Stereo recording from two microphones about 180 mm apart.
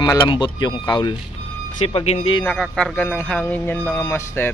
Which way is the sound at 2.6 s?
5° left (ahead or behind).